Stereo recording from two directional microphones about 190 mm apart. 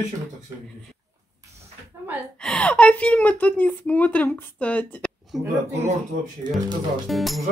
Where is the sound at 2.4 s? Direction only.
5° left (ahead or behind).